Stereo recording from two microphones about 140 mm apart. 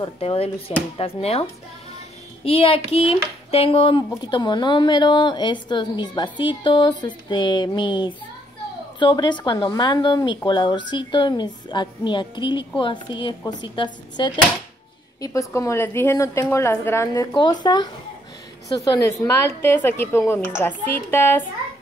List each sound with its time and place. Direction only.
0.0 s speech: 45° left (ahead or behind)
2.4 s a woman's voice: 45° left (ahead or behind); by 17.1 s 20° left (ahead or behind)
17.4 s speech: 30° left (ahead or behind); by 21.5 s 15° left (ahead or behind)